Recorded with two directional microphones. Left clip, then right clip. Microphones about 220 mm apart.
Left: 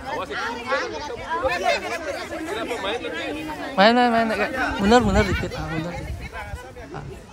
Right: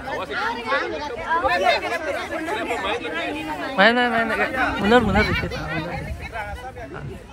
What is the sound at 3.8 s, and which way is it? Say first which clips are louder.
Speech: left 1 dB; 20° left (ahead or behind).